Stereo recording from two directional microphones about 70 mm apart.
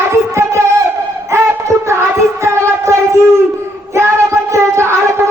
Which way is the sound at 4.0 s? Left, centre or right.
Right.